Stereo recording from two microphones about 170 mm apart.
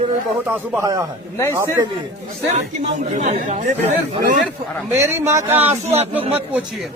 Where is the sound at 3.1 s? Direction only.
45° right (ahead or behind).